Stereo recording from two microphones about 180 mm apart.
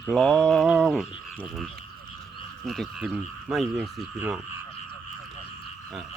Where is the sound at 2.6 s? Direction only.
Centre (ahead or behind).